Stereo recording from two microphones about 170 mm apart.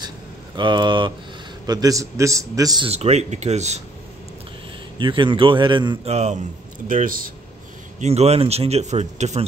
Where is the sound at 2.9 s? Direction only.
40° right (ahead or behind).